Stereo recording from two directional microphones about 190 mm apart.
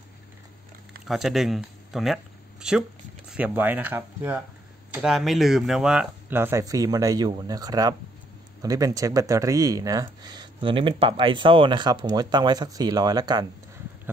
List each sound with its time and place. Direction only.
1.0 s speech: centre (ahead or behind); by 13.5 s 20° right (ahead or behind)